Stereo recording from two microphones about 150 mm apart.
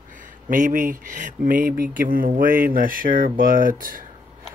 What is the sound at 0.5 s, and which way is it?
Speech, 60° right (ahead or behind).